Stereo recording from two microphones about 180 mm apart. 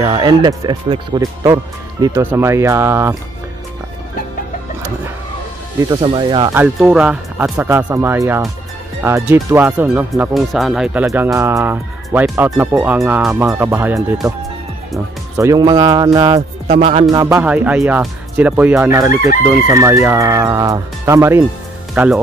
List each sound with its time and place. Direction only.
0.1 s speech: 25° right (ahead or behind)
5.8 s speech: 25° right (ahead or behind)
6.5 s speech: 5° right (ahead or behind)
13.3 s speech: 15° right (ahead or behind)
15.3 s speech: 20° right (ahead or behind)
17.1 s speech: 15° right (ahead or behind)